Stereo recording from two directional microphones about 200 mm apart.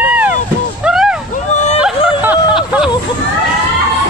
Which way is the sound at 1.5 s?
35° left (ahead or behind).